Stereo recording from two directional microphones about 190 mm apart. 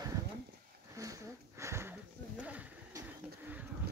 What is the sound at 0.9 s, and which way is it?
Sniff, 15° right (ahead or behind).